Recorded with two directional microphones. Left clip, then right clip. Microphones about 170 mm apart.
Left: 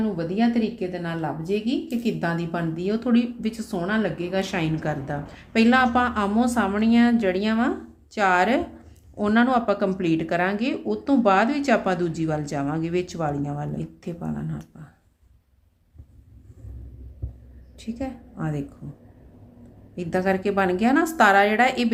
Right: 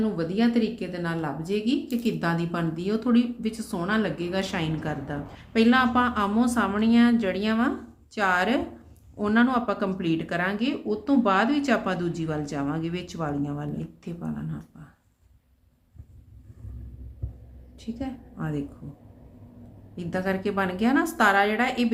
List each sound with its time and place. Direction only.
0.0 s a woman's voice: 20° left (ahead or behind)
17.7 s a woman's voice: 30° left (ahead or behind)
20.0 s speech: 35° left (ahead or behind)